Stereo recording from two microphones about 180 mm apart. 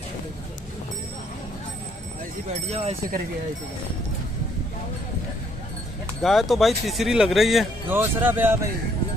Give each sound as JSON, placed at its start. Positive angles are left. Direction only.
{"t": 2.7, "sound": "speech", "side_deg": -35}
{"t": 6.2, "sound": "speech", "side_deg": 0}